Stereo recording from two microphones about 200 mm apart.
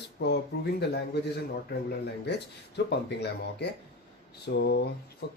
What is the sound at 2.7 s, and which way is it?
Speech, 55° left (ahead or behind).